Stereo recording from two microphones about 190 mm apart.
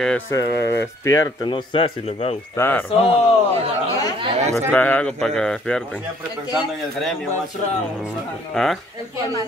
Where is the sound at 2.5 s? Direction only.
10° left (ahead or behind).